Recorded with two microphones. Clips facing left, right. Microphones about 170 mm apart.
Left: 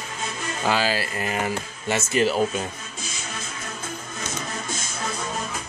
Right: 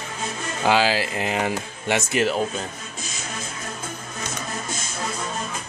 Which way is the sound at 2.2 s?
5° left (ahead or behind).